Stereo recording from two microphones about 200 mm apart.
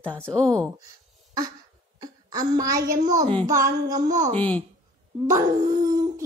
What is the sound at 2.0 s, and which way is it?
Speech, 20° right (ahead or behind).